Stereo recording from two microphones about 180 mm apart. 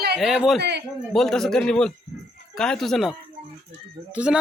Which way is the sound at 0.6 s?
70° right (ahead or behind).